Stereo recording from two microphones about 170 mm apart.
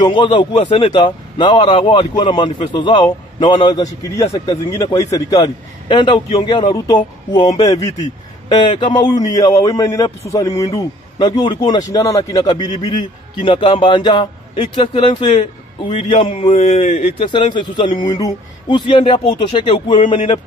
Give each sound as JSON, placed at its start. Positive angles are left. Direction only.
{"t": 0.0, "sound": "a man's voice", "side_deg": 30}
{"t": 16.4, "sound": "speech", "side_deg": 40}
{"t": 17.3, "sound": "a man's voice", "side_deg": 25}